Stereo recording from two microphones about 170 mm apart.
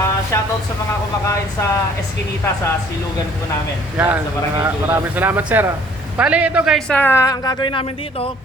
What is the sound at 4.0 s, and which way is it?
Speech, 5° right (ahead or behind).